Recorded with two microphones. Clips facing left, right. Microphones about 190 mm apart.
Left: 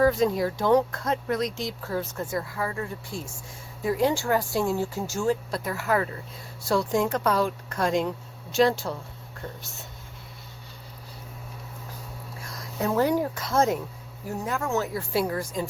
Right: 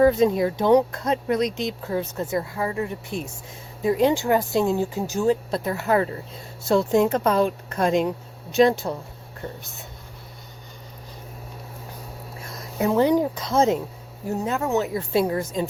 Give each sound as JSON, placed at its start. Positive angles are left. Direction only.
{"t": 0.0, "sound": "speech", "side_deg": -20}
{"t": 12.4, "sound": "speech", "side_deg": -25}